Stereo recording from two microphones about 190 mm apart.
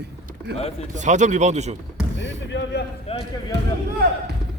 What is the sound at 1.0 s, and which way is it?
Speech, 40° right (ahead or behind).